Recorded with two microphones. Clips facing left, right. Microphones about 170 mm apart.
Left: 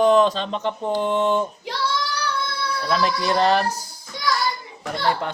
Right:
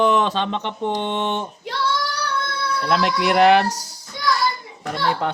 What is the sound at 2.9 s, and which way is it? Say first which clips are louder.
Speech: right 2 dB; 70° right (ahead or behind).